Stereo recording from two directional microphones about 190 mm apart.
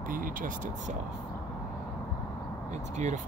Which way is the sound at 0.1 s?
45° right (ahead or behind).